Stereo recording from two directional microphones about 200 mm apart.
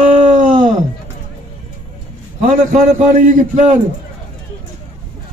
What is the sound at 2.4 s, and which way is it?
A man's voice, 35° right (ahead or behind).